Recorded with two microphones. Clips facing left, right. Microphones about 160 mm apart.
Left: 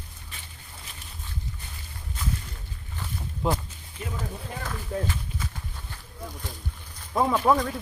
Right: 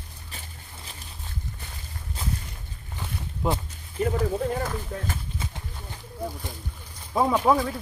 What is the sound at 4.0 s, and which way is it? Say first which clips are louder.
Speech: right 11 dB; 45° right (ahead or behind).